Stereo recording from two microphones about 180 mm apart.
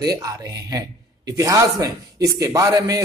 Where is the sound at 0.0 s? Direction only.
20° right (ahead or behind).